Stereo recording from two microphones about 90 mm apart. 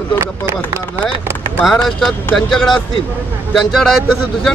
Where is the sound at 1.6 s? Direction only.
5° left (ahead or behind).